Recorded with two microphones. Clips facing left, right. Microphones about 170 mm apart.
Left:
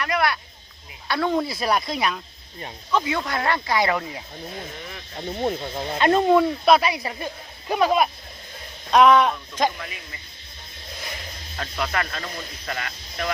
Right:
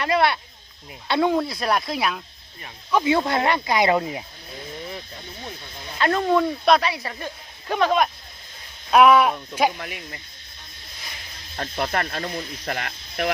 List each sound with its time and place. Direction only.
0.0 s speech: 25° right (ahead or behind)
1.3 s speech: centre (ahead or behind)
3.0 s speech: 25° right (ahead or behind)
5.3 s speech: 60° left (ahead or behind)
6.0 s speech: 20° left (ahead or behind)
6.3 s speech: 10° left (ahead or behind)
8.9 s speech: 5° right (ahead or behind)
11.5 s speech: 35° right (ahead or behind)
12.7 s speech: 60° right (ahead or behind)